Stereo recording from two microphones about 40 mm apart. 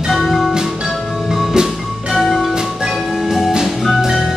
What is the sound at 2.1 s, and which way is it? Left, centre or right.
Music, centre.